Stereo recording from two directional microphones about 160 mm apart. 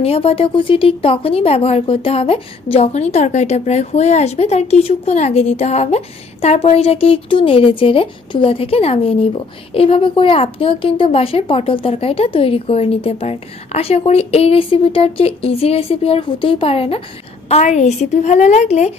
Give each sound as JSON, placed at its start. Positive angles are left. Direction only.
{"t": 0.0, "sound": "a woman's voice", "side_deg": 35}